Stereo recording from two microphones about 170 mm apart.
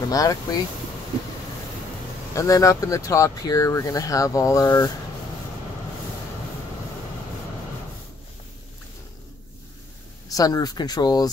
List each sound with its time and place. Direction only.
0.1 s speech: 20° left (ahead or behind)
2.3 s speech: 20° left (ahead or behind)
10.2 s speech: 20° left (ahead or behind)